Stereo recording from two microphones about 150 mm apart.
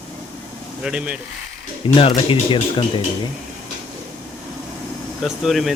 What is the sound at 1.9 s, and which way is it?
Speech, 40° left (ahead or behind).